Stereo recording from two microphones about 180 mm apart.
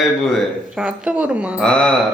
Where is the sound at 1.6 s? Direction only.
5° left (ahead or behind).